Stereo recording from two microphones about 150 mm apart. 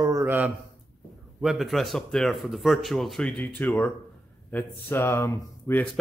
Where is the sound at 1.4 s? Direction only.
Centre (ahead or behind); by 5.8 s 15° left (ahead or behind).